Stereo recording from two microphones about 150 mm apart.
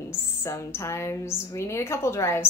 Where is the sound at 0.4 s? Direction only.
20° left (ahead or behind).